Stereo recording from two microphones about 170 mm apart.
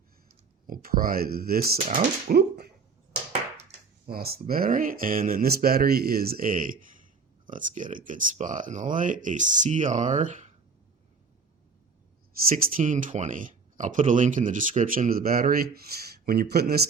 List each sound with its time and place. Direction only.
0.7 s speech: 55° right (ahead or behind)
12.5 s speech: 55° right (ahead or behind)